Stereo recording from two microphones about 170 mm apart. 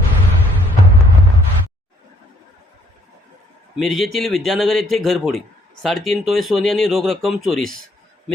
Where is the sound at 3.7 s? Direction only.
Centre (ahead or behind).